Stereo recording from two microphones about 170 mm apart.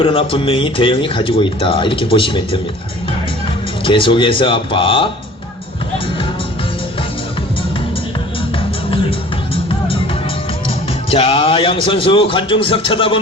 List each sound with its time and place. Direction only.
0.0 s speech: 35° left (ahead or behind)
3.8 s speech: 30° left (ahead or behind)
11.1 s speech: 30° left (ahead or behind)